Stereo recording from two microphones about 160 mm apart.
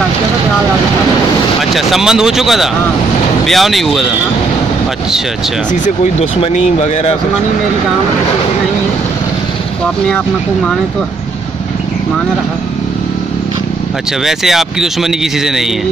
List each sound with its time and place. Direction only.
1.6 s speech: centre (ahead or behind)
6.4 s speech: 40° left (ahead or behind)
14.2 s speech: centre (ahead or behind)